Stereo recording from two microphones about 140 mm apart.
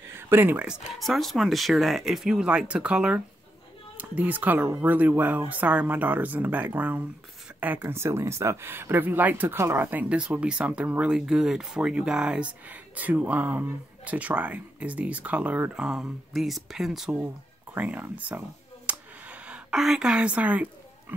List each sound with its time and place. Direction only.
0.1 s speech: 15° right (ahead or behind)
0.9 s speech: centre (ahead or behind)
18.9 s a sound: 10° right (ahead or behind)